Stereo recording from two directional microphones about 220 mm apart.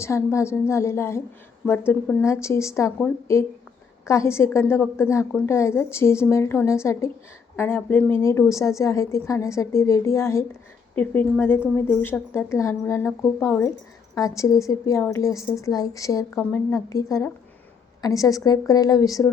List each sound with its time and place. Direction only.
0.0 s a woman's voice: 10° left (ahead or behind)
4.0 s a woman's voice: 10° left (ahead or behind)